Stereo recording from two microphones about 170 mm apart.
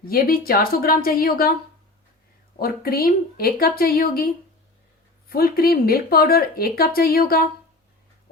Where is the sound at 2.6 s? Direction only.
60° left (ahead or behind).